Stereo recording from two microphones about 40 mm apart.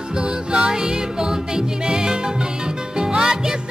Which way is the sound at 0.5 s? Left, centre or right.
Right.